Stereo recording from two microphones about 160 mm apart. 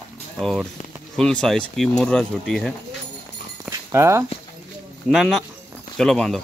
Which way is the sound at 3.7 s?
15° right (ahead or behind).